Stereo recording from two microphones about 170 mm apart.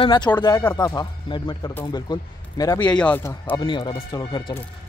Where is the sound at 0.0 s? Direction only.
25° left (ahead or behind).